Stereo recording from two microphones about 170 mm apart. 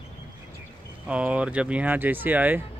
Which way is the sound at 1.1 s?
5° right (ahead or behind).